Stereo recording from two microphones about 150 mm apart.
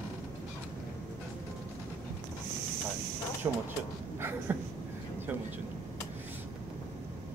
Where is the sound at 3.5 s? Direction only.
20° right (ahead or behind).